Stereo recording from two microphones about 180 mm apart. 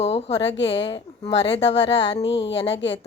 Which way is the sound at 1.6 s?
75° left (ahead or behind).